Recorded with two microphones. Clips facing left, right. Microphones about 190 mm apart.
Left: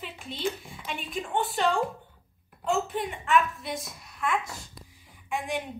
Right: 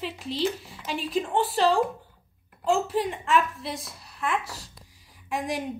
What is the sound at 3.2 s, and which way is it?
Speech, 35° right (ahead or behind).